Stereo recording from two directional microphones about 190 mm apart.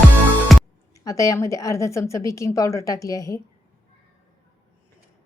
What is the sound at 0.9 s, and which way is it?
A woman's voice, 15° left (ahead or behind).